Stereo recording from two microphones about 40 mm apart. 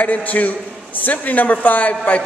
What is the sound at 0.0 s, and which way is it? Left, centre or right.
A man's voice, left.